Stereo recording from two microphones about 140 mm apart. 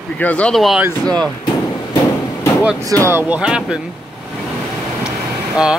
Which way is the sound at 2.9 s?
20° right (ahead or behind).